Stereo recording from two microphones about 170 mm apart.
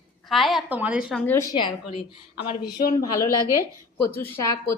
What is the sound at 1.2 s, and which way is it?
Speech, 15° left (ahead or behind).